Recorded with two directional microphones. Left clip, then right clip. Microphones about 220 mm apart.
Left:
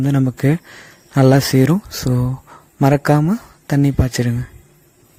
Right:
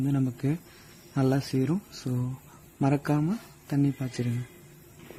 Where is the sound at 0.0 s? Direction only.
40° left (ahead or behind).